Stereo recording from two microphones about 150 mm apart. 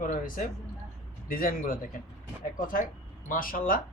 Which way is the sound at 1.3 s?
70° left (ahead or behind).